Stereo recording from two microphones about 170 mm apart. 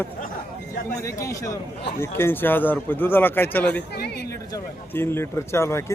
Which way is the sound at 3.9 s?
75° left (ahead or behind).